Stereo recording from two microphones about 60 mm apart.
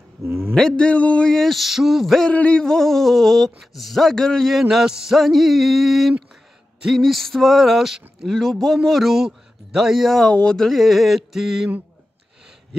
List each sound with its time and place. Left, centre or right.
0.2 s a man's voice: right
0.6 s speech: centre
1.3 s speech: centre
2.3 s a sound: left
2.6 s speech: centre
4.5 s speech: centre
10.3 s speech: centre